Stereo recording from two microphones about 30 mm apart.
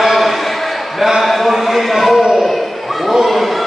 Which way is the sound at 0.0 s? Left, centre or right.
Centre.